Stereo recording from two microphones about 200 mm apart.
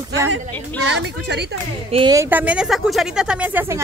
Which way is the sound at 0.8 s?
60° right (ahead or behind).